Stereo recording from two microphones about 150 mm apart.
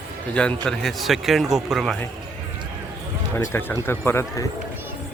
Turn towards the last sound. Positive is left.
turn(degrees=15)  # may be behind; listen again after turning